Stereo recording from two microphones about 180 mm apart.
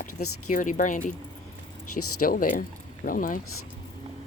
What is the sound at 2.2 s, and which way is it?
Speech, 50° left (ahead or behind).